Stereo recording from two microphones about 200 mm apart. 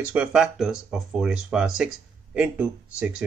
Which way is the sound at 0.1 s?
5° right (ahead or behind).